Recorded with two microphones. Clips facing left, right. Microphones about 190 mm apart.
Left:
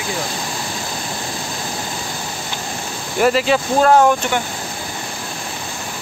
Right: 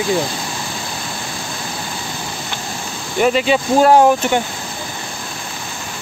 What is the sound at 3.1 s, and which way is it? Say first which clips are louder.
Speech: right 1 dB; centre (ahead or behind).